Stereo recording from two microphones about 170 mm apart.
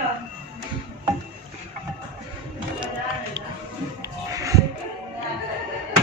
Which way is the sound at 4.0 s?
20° right (ahead or behind).